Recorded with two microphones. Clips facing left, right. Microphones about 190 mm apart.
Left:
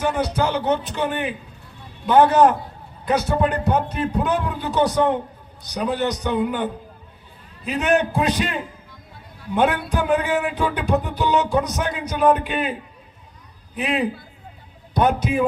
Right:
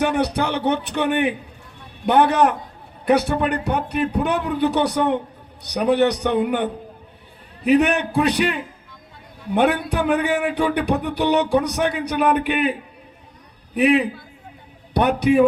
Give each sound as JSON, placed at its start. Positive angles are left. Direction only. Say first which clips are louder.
{"t": 0.0, "sound": "speech", "louder": "right 1 dB", "side_deg": -65}
{"t": 9.6, "sound": "speech", "louder": "right 1 dB", "side_deg": -65}
{"t": 14.9, "sound": "speech", "louder": "right 4 dB", "side_deg": -65}